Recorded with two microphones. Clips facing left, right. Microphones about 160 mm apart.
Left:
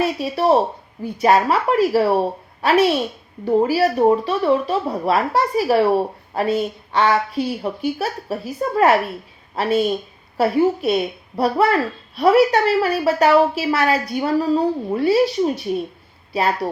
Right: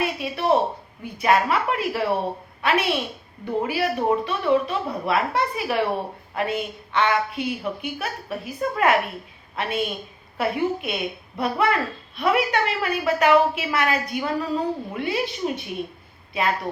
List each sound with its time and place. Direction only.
0.0 s a woman's voice: 35° left (ahead or behind)